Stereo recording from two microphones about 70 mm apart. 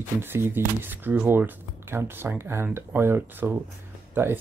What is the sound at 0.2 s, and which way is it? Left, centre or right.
Speech, right.